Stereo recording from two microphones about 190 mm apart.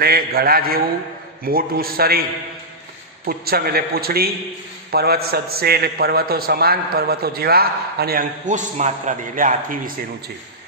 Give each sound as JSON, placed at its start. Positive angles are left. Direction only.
{"t": 0.0, "sound": "a man's voice", "side_deg": -55}
{"t": 3.3, "sound": "a man's voice", "side_deg": -50}